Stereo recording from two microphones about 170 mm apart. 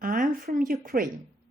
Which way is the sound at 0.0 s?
50° right (ahead or behind).